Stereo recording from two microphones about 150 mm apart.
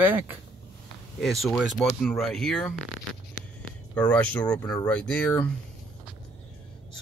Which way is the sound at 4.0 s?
10° left (ahead or behind).